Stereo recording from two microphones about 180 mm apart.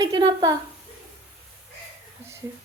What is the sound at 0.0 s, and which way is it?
Speech, 25° right (ahead or behind).